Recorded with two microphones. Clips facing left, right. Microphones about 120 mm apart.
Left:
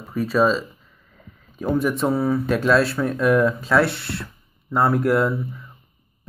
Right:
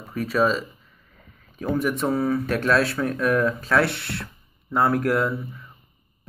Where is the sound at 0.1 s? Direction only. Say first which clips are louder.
Left 3 dB; centre (ahead or behind).